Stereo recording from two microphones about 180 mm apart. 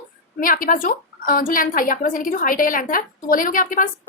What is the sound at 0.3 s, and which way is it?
A woman's voice, 50° left (ahead or behind).